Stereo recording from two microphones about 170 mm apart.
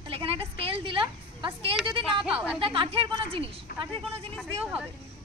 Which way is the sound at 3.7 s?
65° left (ahead or behind).